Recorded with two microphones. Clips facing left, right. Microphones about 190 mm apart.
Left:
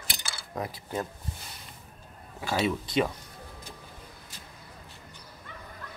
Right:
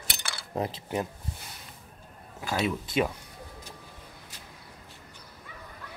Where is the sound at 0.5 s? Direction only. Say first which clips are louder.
Right 4 dB; 25° right (ahead or behind).